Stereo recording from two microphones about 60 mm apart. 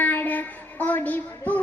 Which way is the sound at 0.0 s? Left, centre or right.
Left.